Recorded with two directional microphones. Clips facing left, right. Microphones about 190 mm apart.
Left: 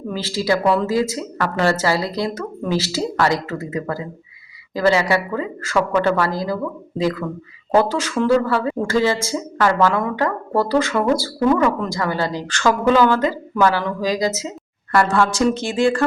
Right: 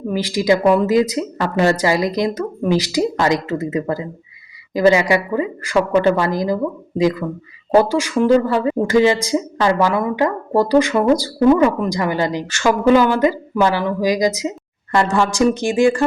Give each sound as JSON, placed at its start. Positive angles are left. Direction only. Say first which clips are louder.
{"t": 0.1, "sound": "a woman's voice", "louder": "right 4 dB", "side_deg": -15}